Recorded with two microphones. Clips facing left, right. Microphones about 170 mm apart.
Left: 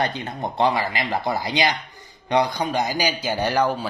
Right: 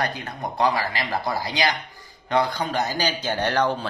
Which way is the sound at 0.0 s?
25° left (ahead or behind).